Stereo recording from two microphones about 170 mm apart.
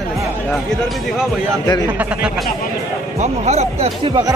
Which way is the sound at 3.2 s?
40° right (ahead or behind).